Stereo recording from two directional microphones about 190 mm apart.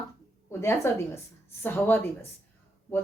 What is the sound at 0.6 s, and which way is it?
Speech, 15° left (ahead or behind).